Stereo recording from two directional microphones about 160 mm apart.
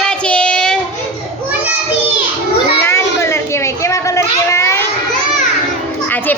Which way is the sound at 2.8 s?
15° left (ahead or behind).